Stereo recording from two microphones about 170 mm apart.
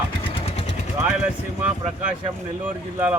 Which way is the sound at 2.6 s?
10° right (ahead or behind).